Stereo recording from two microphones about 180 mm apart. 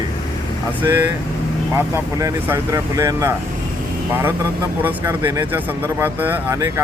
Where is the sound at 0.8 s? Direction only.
10° right (ahead or behind).